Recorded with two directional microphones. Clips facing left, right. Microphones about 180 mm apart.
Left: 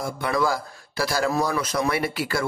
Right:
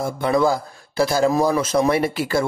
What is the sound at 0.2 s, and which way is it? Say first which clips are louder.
Speech: right 6 dB; 25° right (ahead or behind).